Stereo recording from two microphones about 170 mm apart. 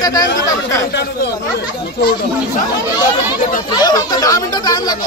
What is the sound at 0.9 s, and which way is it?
Speech, 75° left (ahead or behind).